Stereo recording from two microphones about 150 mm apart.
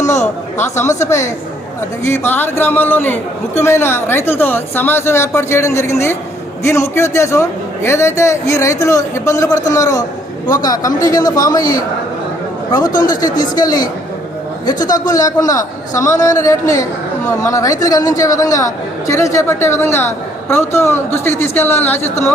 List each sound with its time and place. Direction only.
0.0 s a sound: 50° left (ahead or behind)
2.0 s a woman's voice: 15° left (ahead or behind)
12.9 s speech: 65° left (ahead or behind)
13.4 s a man's voice: 25° left (ahead or behind)